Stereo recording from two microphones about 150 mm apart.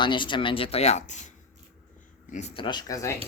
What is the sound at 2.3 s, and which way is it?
Speech, 40° left (ahead or behind).